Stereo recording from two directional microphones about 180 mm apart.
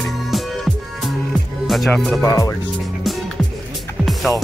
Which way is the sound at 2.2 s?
20° left (ahead or behind).